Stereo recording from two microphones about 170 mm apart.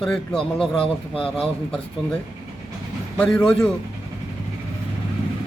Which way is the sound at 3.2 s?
5° left (ahead or behind).